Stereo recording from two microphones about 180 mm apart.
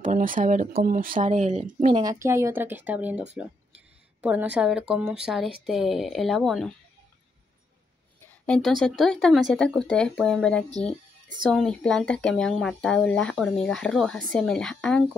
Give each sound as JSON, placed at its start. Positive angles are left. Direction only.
{"t": 0.0, "sound": "speech", "side_deg": -50}
{"t": 2.0, "sound": "speech", "side_deg": -20}
{"t": 8.3, "sound": "a sound", "side_deg": 5}
{"t": 8.8, "sound": "speech", "side_deg": 5}